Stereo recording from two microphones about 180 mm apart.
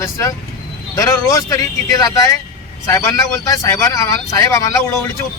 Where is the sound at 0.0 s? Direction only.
15° left (ahead or behind).